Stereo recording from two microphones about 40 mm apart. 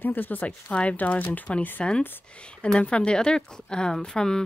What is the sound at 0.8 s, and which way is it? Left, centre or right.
Speech, left.